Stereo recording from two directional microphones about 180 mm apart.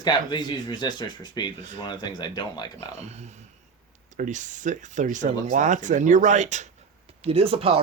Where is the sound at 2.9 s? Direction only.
40° right (ahead or behind).